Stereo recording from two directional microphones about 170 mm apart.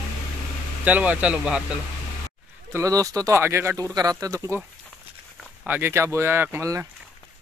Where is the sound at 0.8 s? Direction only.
10° right (ahead or behind).